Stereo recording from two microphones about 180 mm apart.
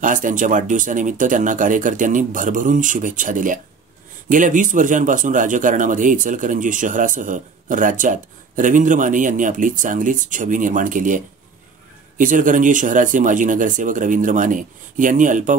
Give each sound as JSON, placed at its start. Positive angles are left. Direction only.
{"t": 0.0, "sound": "speech", "side_deg": -45}